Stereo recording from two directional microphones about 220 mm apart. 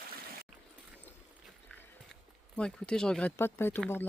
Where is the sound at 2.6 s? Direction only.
5° left (ahead or behind).